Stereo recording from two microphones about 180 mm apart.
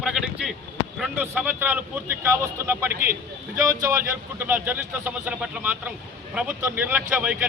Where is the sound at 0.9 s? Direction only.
5° right (ahead or behind).